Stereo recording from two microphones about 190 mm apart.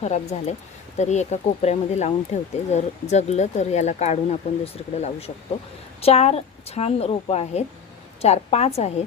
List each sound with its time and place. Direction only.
0.0 s speech: 35° left (ahead or behind)